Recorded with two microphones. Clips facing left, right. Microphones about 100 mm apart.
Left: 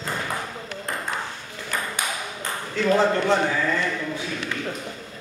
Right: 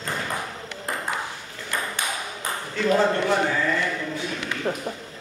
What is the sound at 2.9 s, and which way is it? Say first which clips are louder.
Speech: left 1 dB; 15° left (ahead or behind).